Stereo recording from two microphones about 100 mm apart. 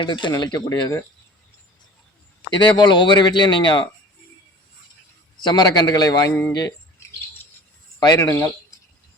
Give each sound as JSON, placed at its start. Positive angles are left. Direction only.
{"t": 0.0, "sound": "speech", "side_deg": 55}
{"t": 0.3, "sound": "a man's voice", "side_deg": 40}
{"t": 2.5, "sound": "speech", "side_deg": 50}
{"t": 5.4, "sound": "a man's voice", "side_deg": 45}
{"t": 7.9, "sound": "a man's voice", "side_deg": 35}